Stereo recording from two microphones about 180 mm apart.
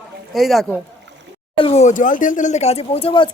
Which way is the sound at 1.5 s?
30° left (ahead or behind).